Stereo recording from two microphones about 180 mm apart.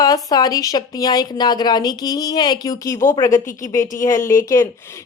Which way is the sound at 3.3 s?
45° left (ahead or behind).